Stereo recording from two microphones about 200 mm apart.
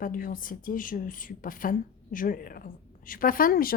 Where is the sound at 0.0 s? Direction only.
45° left (ahead or behind).